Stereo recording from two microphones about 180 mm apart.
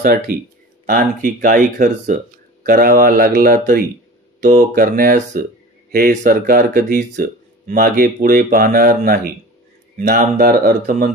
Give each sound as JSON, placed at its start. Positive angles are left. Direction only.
{"t": 0.0, "sound": "speech", "side_deg": -55}